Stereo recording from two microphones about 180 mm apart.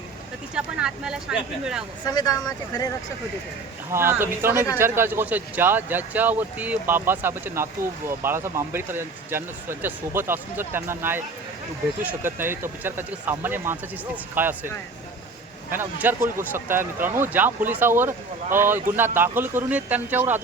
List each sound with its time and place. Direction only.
0.5 s speech: 5° right (ahead or behind)
2.0 s speech: 20° left (ahead or behind)
3.9 s speech: 15° right (ahead or behind)
15.7 s speech: 10° right (ahead or behind)